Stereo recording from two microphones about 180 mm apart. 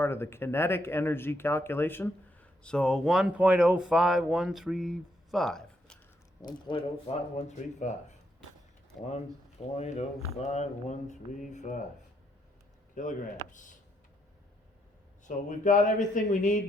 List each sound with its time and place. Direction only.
0.0 s speech: 15° left (ahead or behind)
6.7 s speech: 30° left (ahead or behind)
9.7 s speech: 35° left (ahead or behind)
12.9 s a man's voice: 45° left (ahead or behind)
15.2 s a man's voice: 45° left (ahead or behind)